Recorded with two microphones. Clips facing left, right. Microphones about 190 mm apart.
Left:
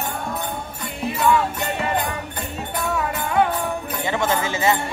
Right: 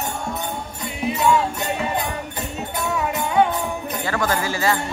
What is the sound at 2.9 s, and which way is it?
Music, 5° right (ahead or behind).